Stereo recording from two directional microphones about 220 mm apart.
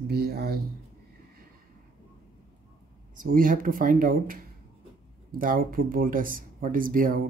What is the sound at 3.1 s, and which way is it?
Speech, 40° right (ahead or behind).